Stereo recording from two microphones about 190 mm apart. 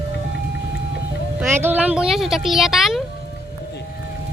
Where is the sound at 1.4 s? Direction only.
10° right (ahead or behind).